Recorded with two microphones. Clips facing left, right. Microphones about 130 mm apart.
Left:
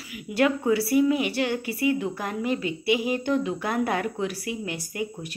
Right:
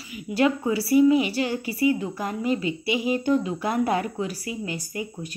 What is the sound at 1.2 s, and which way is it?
A woman's voice, 60° left (ahead or behind).